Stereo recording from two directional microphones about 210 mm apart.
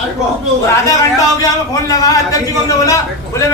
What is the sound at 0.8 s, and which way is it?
A man's voice, 15° left (ahead or behind).